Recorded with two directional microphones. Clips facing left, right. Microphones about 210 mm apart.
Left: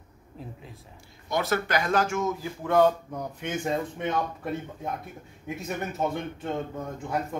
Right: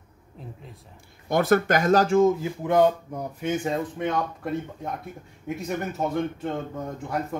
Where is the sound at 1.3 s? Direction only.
55° right (ahead or behind); by 2.3 s 30° right (ahead or behind).